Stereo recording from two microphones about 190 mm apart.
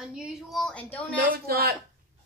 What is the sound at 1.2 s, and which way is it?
Speech, 55° right (ahead or behind).